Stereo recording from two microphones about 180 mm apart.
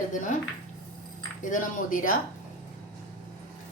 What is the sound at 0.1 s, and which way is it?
Speech, 45° left (ahead or behind).